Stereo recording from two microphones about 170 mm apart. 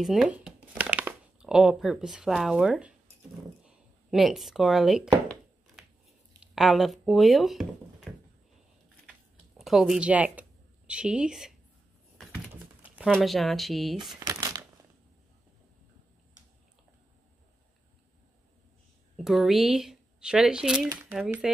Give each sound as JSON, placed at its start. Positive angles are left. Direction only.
{"t": 0.0, "sound": "speech", "side_deg": 0}
{"t": 3.6, "sound": "a sound", "side_deg": 0}
{"t": 6.4, "sound": "speech", "side_deg": 0}
{"t": 9.6, "sound": "speech", "side_deg": 0}
{"t": 12.8, "sound": "a sound", "side_deg": -10}
{"t": 13.1, "sound": "speech", "side_deg": 0}
{"t": 14.2, "sound": "crumpling", "side_deg": -20}
{"t": 19.1, "sound": "speech", "side_deg": 0}
{"t": 20.9, "sound": "speech", "side_deg": -15}
{"t": 21.2, "sound": "speech", "side_deg": -5}